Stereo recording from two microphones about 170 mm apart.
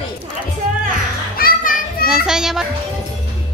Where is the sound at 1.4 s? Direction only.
60° left (ahead or behind).